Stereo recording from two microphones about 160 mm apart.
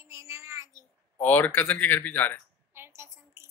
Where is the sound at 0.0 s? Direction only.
20° right (ahead or behind).